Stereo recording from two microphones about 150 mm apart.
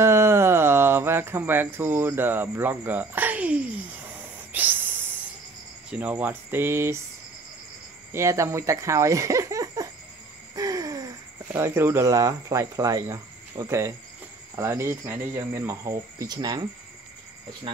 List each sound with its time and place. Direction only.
0.0 s speech: 15° right (ahead or behind)
4.5 s a sound: 10° right (ahead or behind)
5.9 s speech: 10° right (ahead or behind)
8.1 s speech: 20° right (ahead or behind)
10.5 s a sound: 25° right (ahead or behind)
11.4 s speech: 15° right (ahead or behind)